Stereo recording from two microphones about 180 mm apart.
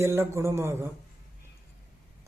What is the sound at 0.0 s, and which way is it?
Speech, 15° right (ahead or behind).